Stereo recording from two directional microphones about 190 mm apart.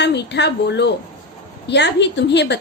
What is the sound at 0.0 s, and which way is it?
A woman's voice, 65° left (ahead or behind).